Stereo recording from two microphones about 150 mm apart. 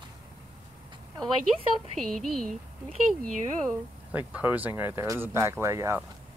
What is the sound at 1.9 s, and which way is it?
Speech, centre (ahead or behind).